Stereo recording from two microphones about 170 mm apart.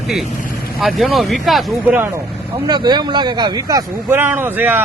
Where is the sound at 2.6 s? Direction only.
25° right (ahead or behind).